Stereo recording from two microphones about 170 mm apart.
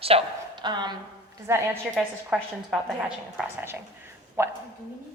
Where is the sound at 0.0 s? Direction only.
30° right (ahead or behind).